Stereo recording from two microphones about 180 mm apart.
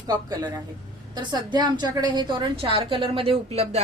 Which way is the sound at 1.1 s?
25° right (ahead or behind).